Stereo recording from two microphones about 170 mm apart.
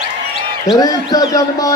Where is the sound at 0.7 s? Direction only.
20° left (ahead or behind).